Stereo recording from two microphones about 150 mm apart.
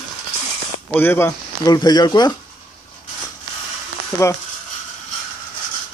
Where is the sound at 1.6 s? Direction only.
25° left (ahead or behind).